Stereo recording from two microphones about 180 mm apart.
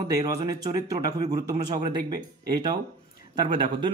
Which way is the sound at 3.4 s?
25° right (ahead or behind).